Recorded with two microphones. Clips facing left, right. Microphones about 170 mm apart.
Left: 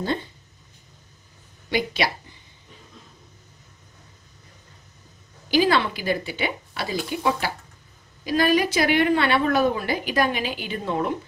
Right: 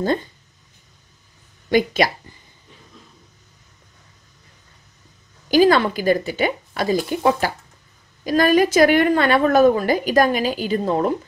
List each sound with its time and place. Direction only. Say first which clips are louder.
1.7 s a woman's voice: right 7 dB; 45° right (ahead or behind)
5.5 s a woman's voice: right 6 dB; 45° right (ahead or behind)